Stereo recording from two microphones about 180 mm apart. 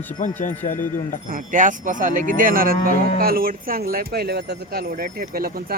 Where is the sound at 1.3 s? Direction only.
45° right (ahead or behind).